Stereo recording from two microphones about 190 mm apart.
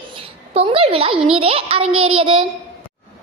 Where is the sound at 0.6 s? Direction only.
30° right (ahead or behind).